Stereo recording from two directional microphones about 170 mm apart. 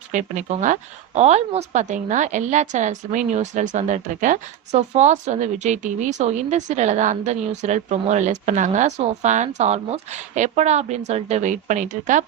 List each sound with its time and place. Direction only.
0.1 s speech: 45° right (ahead or behind)